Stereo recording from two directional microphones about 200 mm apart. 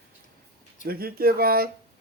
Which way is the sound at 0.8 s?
50° right (ahead or behind).